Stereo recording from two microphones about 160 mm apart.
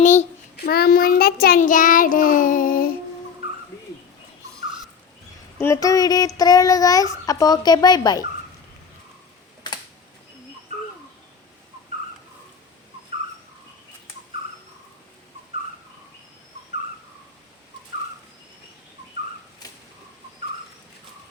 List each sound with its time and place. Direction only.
0.0 s a child's voice: 50° left (ahead or behind)
0.5 s child singing: 75° left (ahead or behind); by 2.9 s 60° left (ahead or behind)
5.5 s child singing: 20° left (ahead or behind)